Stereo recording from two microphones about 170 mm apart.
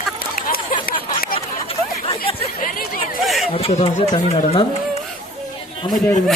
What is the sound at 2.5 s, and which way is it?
Chatter, 55° left (ahead or behind).